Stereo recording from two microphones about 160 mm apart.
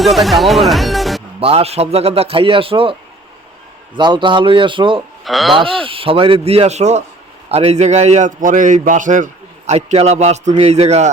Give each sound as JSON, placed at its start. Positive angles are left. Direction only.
{"t": 0.0, "sound": "speech", "side_deg": 0}
{"t": 1.4, "sound": "a man's voice", "side_deg": -40}
{"t": 3.9, "sound": "a man's voice", "side_deg": -30}
{"t": 5.2, "sound": "speech", "side_deg": 0}
{"t": 5.5, "sound": "a man's voice", "side_deg": -35}